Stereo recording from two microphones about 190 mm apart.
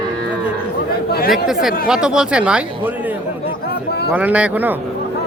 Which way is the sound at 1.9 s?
5° right (ahead or behind).